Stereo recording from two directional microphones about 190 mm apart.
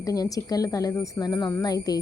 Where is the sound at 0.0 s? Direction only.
20° left (ahead or behind).